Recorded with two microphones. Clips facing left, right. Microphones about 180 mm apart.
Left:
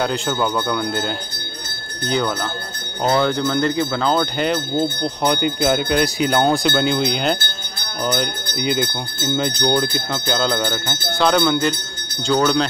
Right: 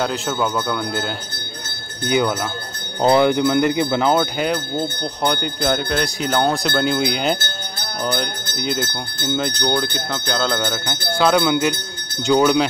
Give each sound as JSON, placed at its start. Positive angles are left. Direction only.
{"t": 0.0, "sound": "speech", "side_deg": 0}
{"t": 2.0, "sound": "speech", "side_deg": -15}